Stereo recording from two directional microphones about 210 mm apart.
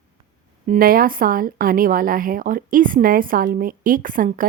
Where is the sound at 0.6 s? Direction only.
45° right (ahead or behind).